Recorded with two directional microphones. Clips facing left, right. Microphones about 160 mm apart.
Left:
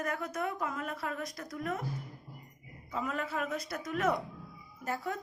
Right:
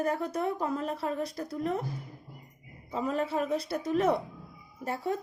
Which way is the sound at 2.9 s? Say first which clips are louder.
Right 5 dB; 30° right (ahead or behind).